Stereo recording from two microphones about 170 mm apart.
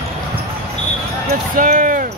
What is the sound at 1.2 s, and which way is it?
Basketball bounce, 55° right (ahead or behind).